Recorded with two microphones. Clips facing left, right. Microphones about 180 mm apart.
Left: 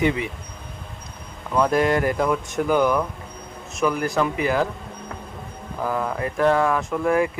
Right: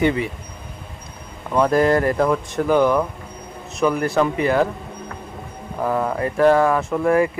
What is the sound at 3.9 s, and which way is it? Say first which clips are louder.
Speech: right 3 dB; centre (ahead or behind).